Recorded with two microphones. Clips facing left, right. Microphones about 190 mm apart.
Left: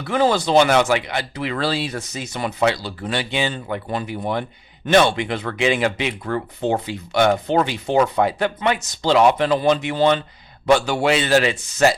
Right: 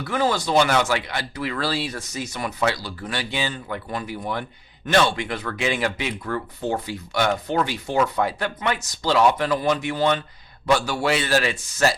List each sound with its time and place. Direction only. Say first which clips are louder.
0.1 s speech: left 5 dB; 25° left (ahead or behind)